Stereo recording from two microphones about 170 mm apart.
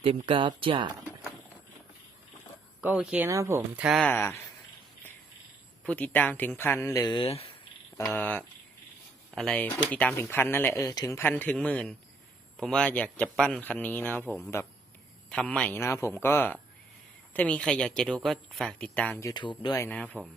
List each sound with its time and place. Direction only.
0.0 s speech: 30° right (ahead or behind)
2.8 s speech: 5° right (ahead or behind)
3.2 s speech: 15° right (ahead or behind)
3.8 s speech: centre (ahead or behind)
4.1 s speech: 15° left (ahead or behind)
5.8 s speech: 10° left (ahead or behind)
7.2 s speech: 35° left (ahead or behind)
7.9 s speech: 15° left (ahead or behind)
19.3 s speech: 25° left (ahead or behind)
19.7 s speech: 15° left (ahead or behind)